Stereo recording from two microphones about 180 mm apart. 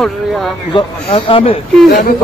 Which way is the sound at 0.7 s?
30° left (ahead or behind).